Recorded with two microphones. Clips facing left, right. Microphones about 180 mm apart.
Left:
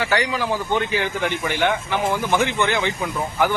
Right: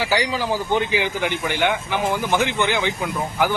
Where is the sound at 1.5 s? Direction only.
5° right (ahead or behind).